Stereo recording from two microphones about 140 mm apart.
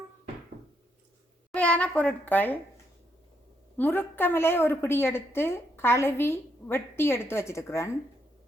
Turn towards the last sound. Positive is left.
turn(degrees=20)  # may be behind; listen again after turning